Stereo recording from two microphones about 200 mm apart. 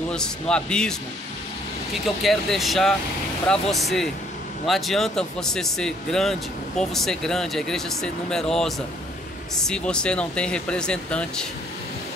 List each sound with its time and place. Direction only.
0.1 s speech: 5° left (ahead or behind)
2.0 s speech: centre (ahead or behind)